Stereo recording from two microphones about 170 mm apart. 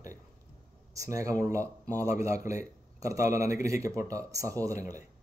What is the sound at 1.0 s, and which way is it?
Speech, 20° right (ahead or behind).